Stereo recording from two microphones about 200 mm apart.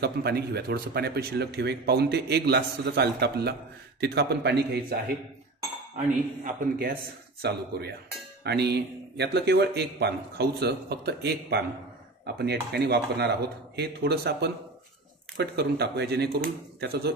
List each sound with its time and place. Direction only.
0.0 s speech: 55° right (ahead or behind)
6.4 s a man's voice: 45° right (ahead or behind)